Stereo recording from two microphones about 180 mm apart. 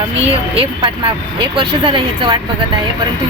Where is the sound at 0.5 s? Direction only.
30° right (ahead or behind).